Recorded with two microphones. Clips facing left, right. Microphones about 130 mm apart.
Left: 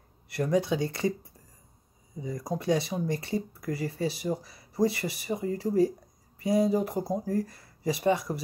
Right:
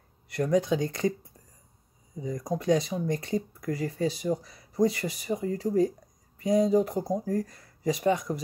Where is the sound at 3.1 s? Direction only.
45° right (ahead or behind).